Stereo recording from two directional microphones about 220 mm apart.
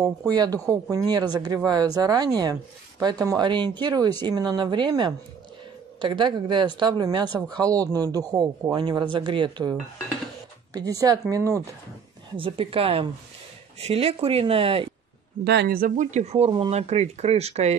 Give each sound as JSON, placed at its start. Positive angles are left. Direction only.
{"t": 0.0, "sound": "speech", "side_deg": -15}
{"t": 12.4, "sound": "speech", "side_deg": -25}
{"t": 15.4, "sound": "speech", "side_deg": -50}